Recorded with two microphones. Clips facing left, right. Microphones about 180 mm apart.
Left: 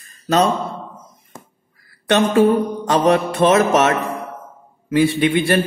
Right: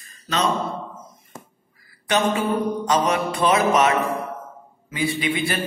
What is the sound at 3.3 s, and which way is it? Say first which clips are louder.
Music: left 4 dB; 70° left (ahead or behind).